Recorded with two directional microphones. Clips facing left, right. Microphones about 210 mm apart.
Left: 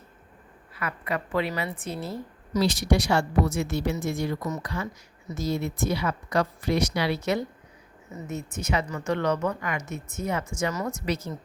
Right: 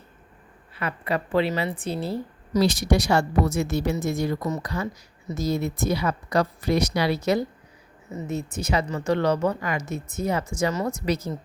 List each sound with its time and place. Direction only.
0.7 s speech: 30° right (ahead or behind)